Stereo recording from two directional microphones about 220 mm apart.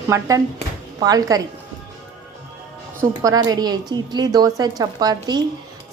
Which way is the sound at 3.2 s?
15° right (ahead or behind).